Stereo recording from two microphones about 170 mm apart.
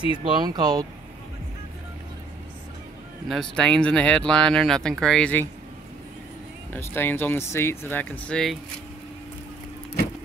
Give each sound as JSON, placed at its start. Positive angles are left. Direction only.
{"t": 0.2, "sound": "speech", "side_deg": -25}
{"t": 3.3, "sound": "speech", "side_deg": 5}
{"t": 6.7, "sound": "speech", "side_deg": 10}